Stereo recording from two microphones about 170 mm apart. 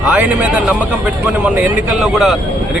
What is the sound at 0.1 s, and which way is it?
A man's voice, 5° right (ahead or behind).